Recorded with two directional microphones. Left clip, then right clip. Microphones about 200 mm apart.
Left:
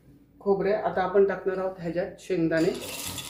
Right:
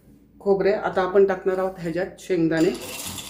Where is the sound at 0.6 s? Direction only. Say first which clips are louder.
Right 4 dB; 50° right (ahead or behind); by 2.6 s 35° right (ahead or behind).